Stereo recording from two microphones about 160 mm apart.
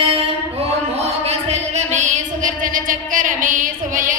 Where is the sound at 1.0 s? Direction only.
40° right (ahead or behind).